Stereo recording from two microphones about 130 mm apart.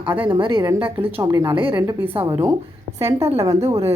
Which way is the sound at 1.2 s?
25° right (ahead or behind).